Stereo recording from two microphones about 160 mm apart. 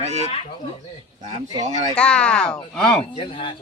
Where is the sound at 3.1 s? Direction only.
35° left (ahead or behind).